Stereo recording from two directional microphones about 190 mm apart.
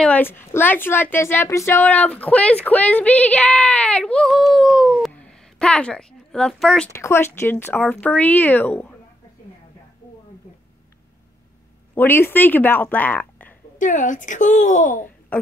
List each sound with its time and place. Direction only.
0.0 s a woman's voice: 10° left (ahead or behind)
6.9 s a woman's voice: 15° left (ahead or behind)
11.9 s speech: 10° left (ahead or behind)
13.7 s speech: 40° left (ahead or behind)